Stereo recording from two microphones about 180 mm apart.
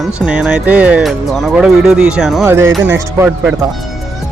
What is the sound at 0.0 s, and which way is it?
Speech, 5° right (ahead or behind).